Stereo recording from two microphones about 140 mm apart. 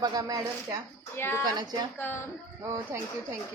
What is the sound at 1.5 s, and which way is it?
Speech, 30° right (ahead or behind).